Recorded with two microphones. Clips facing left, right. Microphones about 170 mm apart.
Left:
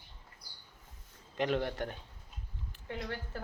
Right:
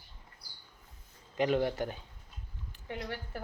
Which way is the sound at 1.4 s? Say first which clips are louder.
Right 3 dB; 5° right (ahead or behind).